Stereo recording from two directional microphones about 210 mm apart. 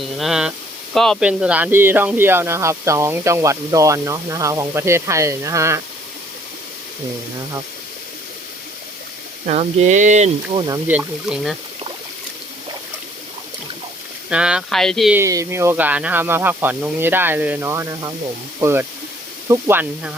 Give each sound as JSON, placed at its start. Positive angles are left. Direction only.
{"t": 0.0, "sound": "speech", "side_deg": 0}
{"t": 9.5, "sound": "speech", "side_deg": -35}
{"t": 10.8, "sound": "speech", "side_deg": -5}
{"t": 14.3, "sound": "speech", "side_deg": -5}
{"t": 15.2, "sound": "speech", "side_deg": -15}